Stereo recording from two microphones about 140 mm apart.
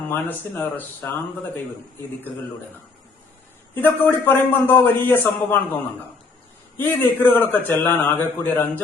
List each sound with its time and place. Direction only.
0.1 s a man's voice: 15° left (ahead or behind)
3.8 s a man's voice: 15° left (ahead or behind)
6.7 s a man's voice: 15° left (ahead or behind)